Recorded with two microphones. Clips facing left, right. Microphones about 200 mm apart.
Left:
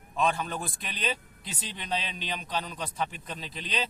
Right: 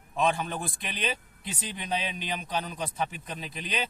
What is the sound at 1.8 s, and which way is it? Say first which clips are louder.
Speech: right 1 dB; 10° right (ahead or behind).